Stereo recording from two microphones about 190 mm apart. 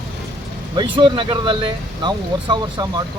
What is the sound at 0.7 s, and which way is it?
Speech, 25° right (ahead or behind).